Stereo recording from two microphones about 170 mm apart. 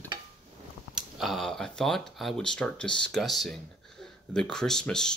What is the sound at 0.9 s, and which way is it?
Speech, centre (ahead or behind).